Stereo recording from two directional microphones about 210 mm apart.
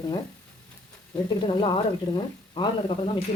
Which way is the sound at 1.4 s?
20° left (ahead or behind).